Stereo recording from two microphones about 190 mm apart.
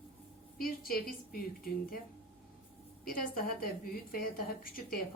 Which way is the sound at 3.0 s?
50° left (ahead or behind).